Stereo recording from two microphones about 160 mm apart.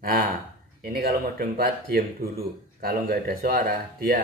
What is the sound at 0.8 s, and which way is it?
Speech, 70° right (ahead or behind).